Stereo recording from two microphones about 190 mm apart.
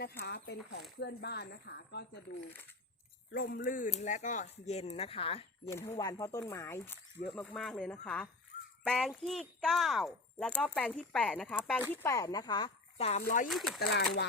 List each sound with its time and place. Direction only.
0.2 s speech: 55° left (ahead or behind)
3.3 s speech: 50° left (ahead or behind); by 5.5 s 30° left (ahead or behind)
5.6 s speech: 15° left (ahead or behind)
7.3 s speech: centre (ahead or behind)
12.0 s speech: 20° left (ahead or behind); by 13.2 s 35° left (ahead or behind)
13.2 s speech: 45° left (ahead or behind)
13.5 s speech: centre (ahead or behind)
13.7 s speech: 60° left (ahead or behind)